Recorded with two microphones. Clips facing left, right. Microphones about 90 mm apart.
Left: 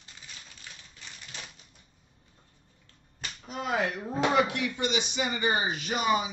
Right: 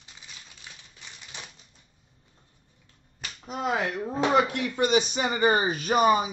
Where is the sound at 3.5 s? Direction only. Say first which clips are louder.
Right 2 dB; 30° right (ahead or behind).